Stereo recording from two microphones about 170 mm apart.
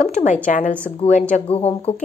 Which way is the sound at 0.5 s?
50° left (ahead or behind).